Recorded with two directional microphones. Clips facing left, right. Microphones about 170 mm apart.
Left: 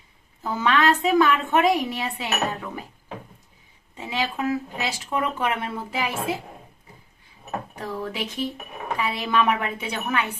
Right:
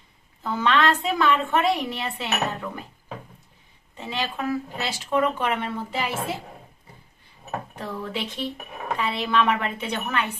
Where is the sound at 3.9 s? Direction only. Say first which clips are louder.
Left 2 dB; 10° left (ahead or behind).